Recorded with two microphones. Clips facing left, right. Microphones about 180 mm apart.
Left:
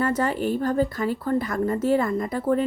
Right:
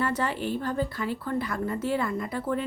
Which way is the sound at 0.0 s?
45° left (ahead or behind).